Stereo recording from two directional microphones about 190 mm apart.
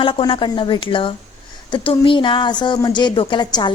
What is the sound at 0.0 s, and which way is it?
Speech, 25° left (ahead or behind).